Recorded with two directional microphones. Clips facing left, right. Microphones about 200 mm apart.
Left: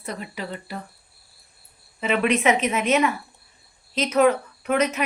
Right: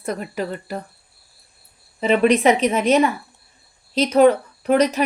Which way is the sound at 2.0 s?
35° right (ahead or behind).